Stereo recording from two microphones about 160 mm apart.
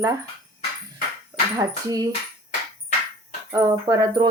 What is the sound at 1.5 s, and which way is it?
Speech, 20° right (ahead or behind).